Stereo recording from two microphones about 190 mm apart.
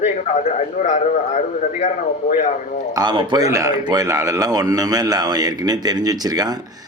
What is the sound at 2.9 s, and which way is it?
A man's voice, 25° right (ahead or behind).